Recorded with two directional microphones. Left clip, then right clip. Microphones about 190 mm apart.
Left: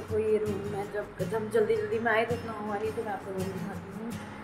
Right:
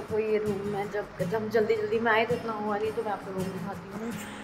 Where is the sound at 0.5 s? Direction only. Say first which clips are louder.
Right 3 dB; centre (ahead or behind).